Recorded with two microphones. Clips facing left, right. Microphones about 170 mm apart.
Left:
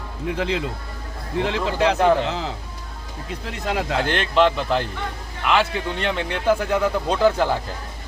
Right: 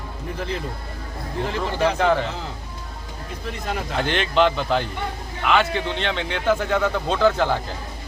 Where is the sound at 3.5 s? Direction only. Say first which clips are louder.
Left 4 dB; 75° left (ahead or behind).